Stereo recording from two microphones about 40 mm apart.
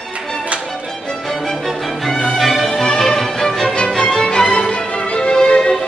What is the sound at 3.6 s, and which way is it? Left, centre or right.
Music, left.